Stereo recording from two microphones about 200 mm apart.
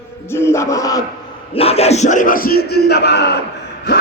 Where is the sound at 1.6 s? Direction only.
30° left (ahead or behind); by 3.4 s 55° left (ahead or behind).